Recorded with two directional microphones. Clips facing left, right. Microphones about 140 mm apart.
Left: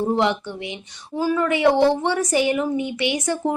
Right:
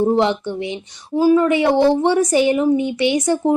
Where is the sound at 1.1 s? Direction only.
20° right (ahead or behind).